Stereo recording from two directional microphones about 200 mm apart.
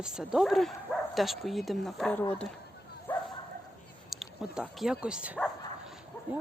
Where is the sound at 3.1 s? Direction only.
10° left (ahead or behind).